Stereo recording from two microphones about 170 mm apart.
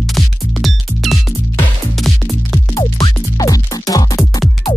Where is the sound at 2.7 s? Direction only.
25° left (ahead or behind).